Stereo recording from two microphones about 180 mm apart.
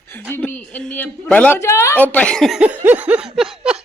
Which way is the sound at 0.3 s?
10° left (ahead or behind).